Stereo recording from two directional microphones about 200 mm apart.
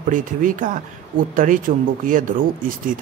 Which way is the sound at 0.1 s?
40° right (ahead or behind).